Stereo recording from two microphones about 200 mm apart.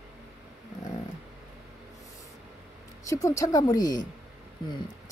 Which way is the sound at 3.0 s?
15° left (ahead or behind).